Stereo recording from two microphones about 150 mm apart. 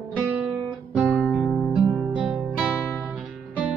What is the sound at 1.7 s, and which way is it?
Guitar, 5° right (ahead or behind).